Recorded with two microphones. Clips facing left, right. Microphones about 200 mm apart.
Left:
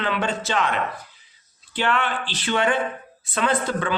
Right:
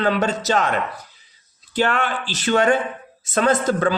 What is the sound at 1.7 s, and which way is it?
A man's voice, 45° right (ahead or behind).